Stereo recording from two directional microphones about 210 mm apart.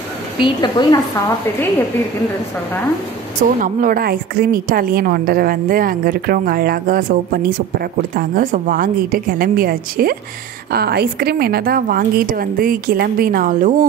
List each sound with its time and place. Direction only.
0.4 s a woman's voice: 20° left (ahead or behind)
3.4 s a woman's voice: 40° right (ahead or behind)